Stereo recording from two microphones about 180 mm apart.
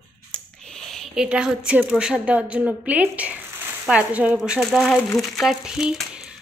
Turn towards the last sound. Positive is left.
turn(degrees=-5)  # may be behind; listen again after turning